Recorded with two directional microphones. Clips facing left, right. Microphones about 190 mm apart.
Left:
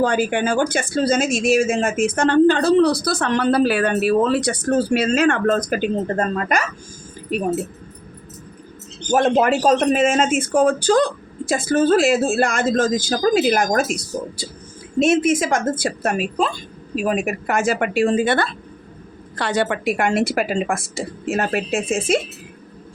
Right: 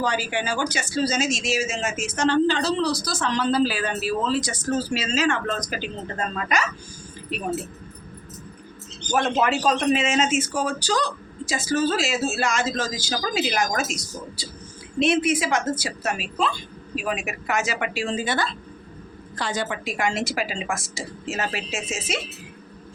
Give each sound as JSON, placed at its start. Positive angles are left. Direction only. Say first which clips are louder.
{"t": 0.0, "sound": "a man's voice", "louder": "left 7 dB", "side_deg": 55}
{"t": 9.0, "sound": "a man's voice", "louder": "left 6 dB", "side_deg": 45}